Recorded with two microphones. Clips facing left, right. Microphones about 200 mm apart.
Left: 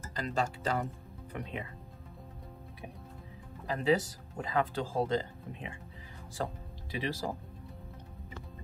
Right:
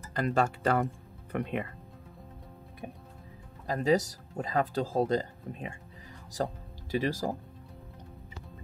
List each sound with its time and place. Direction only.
0.1 s speech: 60° right (ahead or behind)
3.6 s speech: 40° right (ahead or behind)